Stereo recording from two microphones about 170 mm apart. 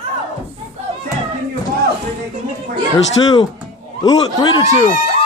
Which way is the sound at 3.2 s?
30° left (ahead or behind).